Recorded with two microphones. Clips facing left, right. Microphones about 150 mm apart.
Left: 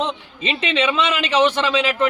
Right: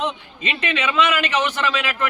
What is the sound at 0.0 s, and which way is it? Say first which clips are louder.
A man's voice: left 2 dB; 25° left (ahead or behind).